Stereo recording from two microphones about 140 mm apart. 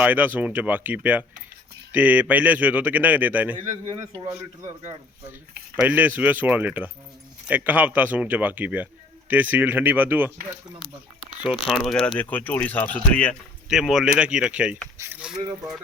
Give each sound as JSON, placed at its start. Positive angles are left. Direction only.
{"t": 0.0, "sound": "a man's voice", "side_deg": -10}
{"t": 5.8, "sound": "a man's voice", "side_deg": -10}
{"t": 11.6, "sound": "speech", "side_deg": 0}
{"t": 13.7, "sound": "a man's voice", "side_deg": -5}
{"t": 14.9, "sound": "speech", "side_deg": -20}